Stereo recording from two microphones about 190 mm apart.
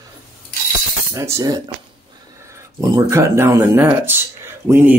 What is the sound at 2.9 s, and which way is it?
Speech, 15° right (ahead or behind).